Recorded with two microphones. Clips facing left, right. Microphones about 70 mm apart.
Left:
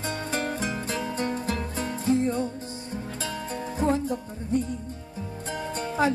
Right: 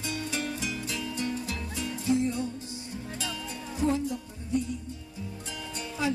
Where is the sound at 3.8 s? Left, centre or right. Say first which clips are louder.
Left 2 dB; left.